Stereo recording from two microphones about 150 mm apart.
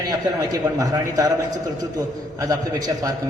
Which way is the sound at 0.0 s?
25° right (ahead or behind).